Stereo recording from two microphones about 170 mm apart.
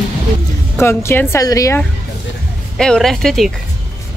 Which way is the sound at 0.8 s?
15° left (ahead or behind).